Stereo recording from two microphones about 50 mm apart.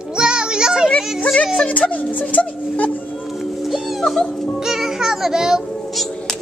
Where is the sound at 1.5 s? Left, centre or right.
Left.